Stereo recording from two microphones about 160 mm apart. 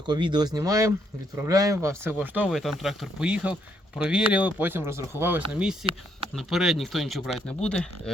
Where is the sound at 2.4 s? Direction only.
Centre (ahead or behind).